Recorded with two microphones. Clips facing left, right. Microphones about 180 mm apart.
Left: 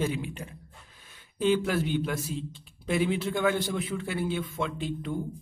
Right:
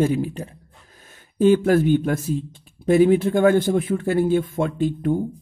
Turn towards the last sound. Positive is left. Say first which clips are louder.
# right 11 dB
turn(degrees=-50)  # may be behind; listen again after turning